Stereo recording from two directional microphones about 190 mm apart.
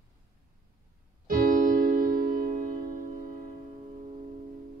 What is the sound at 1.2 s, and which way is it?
Music, 45° right (ahead or behind).